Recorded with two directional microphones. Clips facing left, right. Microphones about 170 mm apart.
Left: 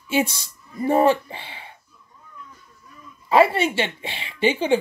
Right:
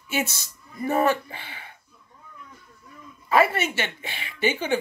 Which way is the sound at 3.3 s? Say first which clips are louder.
Left 4 dB; 30° left (ahead or behind).